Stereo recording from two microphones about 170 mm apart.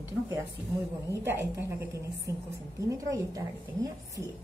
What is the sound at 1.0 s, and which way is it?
A woman's voice, 15° right (ahead or behind).